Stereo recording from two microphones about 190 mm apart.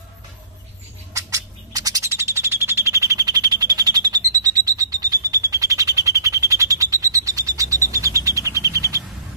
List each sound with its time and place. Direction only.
1.1 s bird: 15° right (ahead or behind)